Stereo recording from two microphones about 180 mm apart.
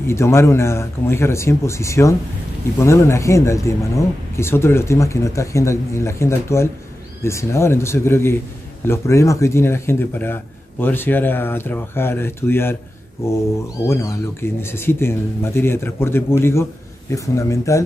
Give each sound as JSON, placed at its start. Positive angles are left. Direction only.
{"t": 0.0, "sound": "speech", "side_deg": 15}
{"t": 13.8, "sound": "speech", "side_deg": 15}